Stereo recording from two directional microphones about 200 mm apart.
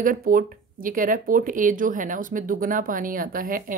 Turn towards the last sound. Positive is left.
turn(degrees=-45)  # may be behind; listen again after turning